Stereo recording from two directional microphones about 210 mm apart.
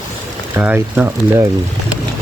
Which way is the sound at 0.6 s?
10° right (ahead or behind).